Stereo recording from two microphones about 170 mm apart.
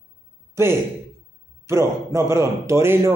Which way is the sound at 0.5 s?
15° right (ahead or behind).